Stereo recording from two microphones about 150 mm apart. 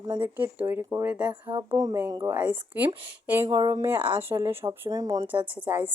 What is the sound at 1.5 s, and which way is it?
Speech, 35° right (ahead or behind).